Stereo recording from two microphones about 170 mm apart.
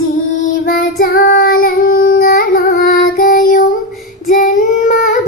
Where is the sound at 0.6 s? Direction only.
55° left (ahead or behind).